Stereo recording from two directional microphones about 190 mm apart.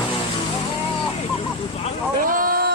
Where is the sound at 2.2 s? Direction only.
45° right (ahead or behind).